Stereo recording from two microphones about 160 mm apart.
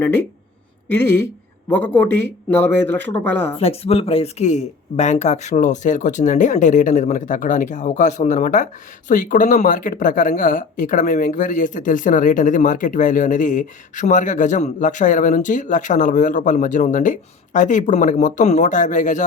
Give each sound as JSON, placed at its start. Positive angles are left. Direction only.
{"t": 0.9, "sound": "speech", "side_deg": 10}
{"t": 2.9, "sound": "speech", "side_deg": -90}
{"t": 3.5, "sound": "speech", "side_deg": 40}